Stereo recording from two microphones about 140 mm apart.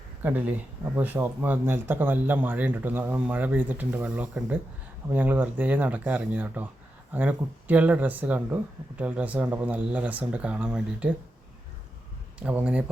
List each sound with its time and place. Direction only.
0.2 s speech: 10° right (ahead or behind)
12.4 s speech: 10° right (ahead or behind)